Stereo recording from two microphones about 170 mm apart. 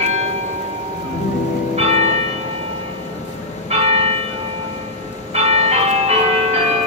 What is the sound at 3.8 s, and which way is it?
Church bell, 35° right (ahead or behind).